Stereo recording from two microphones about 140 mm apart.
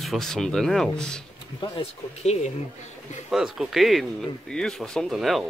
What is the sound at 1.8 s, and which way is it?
Speech, 50° left (ahead or behind).